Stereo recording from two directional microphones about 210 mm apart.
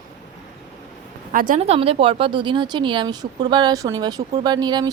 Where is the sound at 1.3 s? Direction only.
40° right (ahead or behind); by 4.9 s 20° right (ahead or behind).